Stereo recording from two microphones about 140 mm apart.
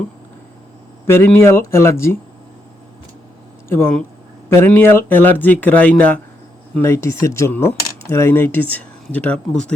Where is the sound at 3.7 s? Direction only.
15° left (ahead or behind).